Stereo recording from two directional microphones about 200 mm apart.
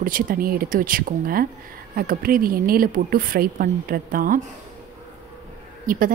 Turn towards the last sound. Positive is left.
turn(degrees=-45)  # may be behind; listen again after turning